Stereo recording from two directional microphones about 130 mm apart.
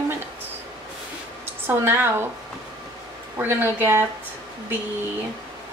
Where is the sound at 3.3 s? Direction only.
15° right (ahead or behind).